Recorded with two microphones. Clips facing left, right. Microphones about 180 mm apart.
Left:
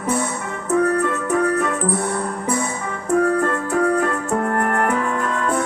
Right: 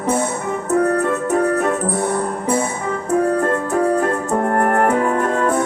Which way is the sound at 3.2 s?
30° right (ahead or behind).